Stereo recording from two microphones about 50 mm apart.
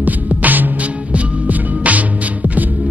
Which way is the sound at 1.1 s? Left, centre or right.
Right.